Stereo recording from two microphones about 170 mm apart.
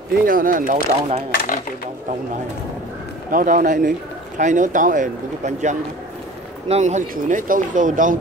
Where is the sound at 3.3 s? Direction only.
50° right (ahead or behind).